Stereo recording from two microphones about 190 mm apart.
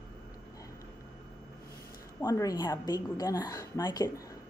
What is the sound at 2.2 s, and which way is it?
A woman's voice, 15° left (ahead or behind).